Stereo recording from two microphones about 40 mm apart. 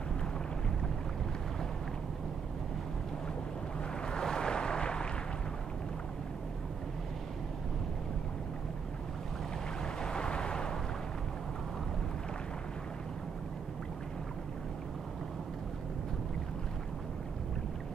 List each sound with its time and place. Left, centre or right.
4.0 s boat: centre
10.0 s boat: left